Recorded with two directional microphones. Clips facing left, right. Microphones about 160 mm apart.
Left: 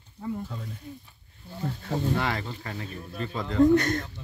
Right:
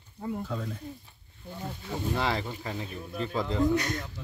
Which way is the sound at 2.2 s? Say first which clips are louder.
Even; 20° right (ahead or behind).